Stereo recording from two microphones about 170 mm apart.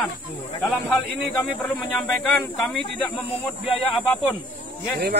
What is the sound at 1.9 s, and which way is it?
Speech, centre (ahead or behind).